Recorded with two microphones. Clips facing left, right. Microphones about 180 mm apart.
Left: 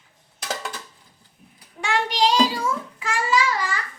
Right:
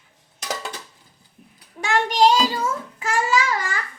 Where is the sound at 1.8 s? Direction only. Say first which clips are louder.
Right 4 dB; 45° right (ahead or behind).